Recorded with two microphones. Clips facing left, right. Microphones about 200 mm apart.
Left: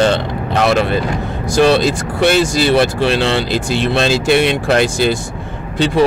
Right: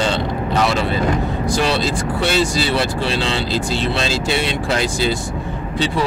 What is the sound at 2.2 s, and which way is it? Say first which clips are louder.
Speech: left 6 dB; 55° left (ahead or behind).